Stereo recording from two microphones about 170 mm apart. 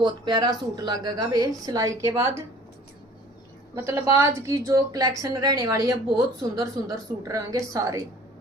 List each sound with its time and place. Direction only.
0.0 s a woman's voice: 25° right (ahead or behind)
3.8 s a woman's voice: 15° right (ahead or behind)